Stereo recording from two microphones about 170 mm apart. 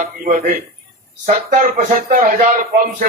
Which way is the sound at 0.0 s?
50° right (ahead or behind).